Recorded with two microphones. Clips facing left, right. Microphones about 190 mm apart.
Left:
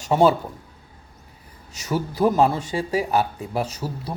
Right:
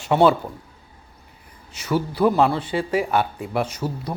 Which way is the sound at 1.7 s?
40° left (ahead or behind).